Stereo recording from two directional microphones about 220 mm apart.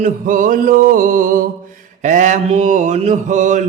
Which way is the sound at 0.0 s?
40° right (ahead or behind).